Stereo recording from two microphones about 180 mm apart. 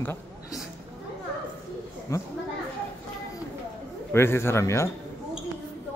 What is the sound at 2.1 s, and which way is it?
Speech, 15° left (ahead or behind).